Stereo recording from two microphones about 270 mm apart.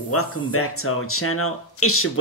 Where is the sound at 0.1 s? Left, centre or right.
Left.